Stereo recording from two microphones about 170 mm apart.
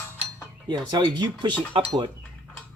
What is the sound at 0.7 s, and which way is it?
Speech, 25° right (ahead or behind).